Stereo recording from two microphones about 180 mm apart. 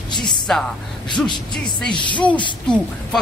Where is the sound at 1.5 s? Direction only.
5° left (ahead or behind).